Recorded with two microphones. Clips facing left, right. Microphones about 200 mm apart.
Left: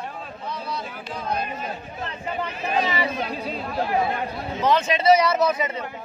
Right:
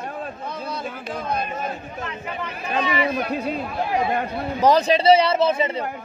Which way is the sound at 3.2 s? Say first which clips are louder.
Right 4 dB; 50° right (ahead or behind).